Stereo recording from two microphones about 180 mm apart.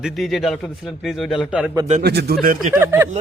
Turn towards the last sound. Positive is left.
turn(degrees=-10)  # may be behind; listen again after turning